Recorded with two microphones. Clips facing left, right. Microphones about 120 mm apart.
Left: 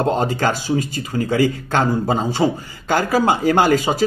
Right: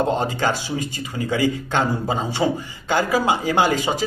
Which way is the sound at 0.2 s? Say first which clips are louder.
Left 3 dB; 45° left (ahead or behind).